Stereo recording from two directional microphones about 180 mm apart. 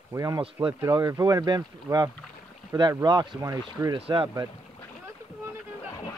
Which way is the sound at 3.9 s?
30° right (ahead or behind).